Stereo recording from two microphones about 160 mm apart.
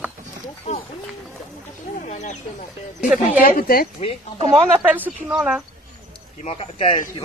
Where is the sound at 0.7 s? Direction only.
40° left (ahead or behind).